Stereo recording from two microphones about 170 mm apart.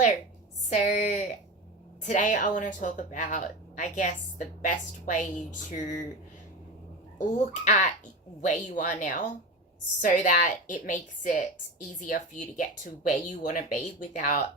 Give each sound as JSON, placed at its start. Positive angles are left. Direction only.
{"t": 0.7, "sound": "a woman's voice", "side_deg": 45}
{"t": 7.2, "sound": "a woman's voice", "side_deg": 45}